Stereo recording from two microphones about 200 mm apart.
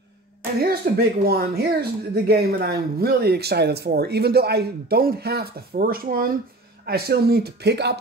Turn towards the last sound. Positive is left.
turn(degrees=-55)  # may be behind; listen again after turning